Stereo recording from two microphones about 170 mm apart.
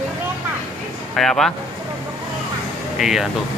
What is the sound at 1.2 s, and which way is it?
Speech, centre (ahead or behind).